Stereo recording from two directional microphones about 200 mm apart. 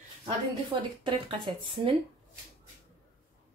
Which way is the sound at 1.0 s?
25° right (ahead or behind).